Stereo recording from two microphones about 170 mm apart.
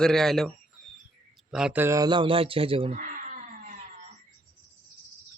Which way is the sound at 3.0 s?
50° right (ahead or behind).